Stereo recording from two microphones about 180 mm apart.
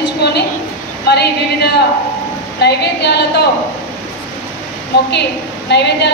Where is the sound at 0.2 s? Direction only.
65° left (ahead or behind).